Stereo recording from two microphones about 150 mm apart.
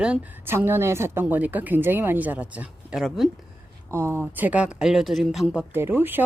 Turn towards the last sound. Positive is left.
turn(degrees=-15)  # may be behind; listen again after turning